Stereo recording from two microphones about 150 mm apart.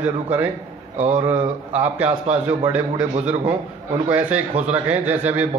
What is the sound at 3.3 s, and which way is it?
Speech, 40° right (ahead or behind).